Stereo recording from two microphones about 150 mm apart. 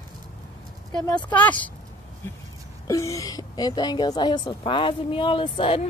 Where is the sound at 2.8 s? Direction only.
20° left (ahead or behind); by 5.9 s 35° left (ahead or behind).